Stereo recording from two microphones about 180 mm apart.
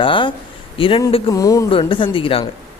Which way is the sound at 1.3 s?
20° left (ahead or behind).